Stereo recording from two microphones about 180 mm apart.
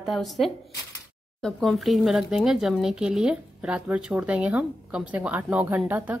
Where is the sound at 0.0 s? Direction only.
Centre (ahead or behind).